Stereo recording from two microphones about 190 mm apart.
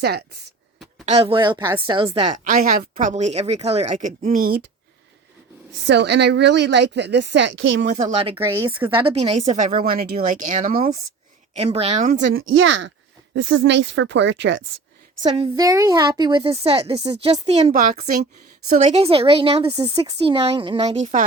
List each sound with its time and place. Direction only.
0.0 s speech: 60° right (ahead or behind)
1.0 s a woman's voice: 35° right (ahead or behind); by 4.6 s 50° right (ahead or behind)
5.8 s speech: 65° right (ahead or behind)
7.9 s a woman's voice: 35° right (ahead or behind)
8.4 s speech: 15° right (ahead or behind)
8.9 s a woman's voice: 25° right (ahead or behind)
9.5 s speech: 40° right (ahead or behind)
11.5 s a woman's voice: 30° right (ahead or behind)
12.0 s a woman's voice: 65° right (ahead or behind)
15.2 s a woman's voice: 20° right (ahead or behind); by 21.2 s 40° right (ahead or behind)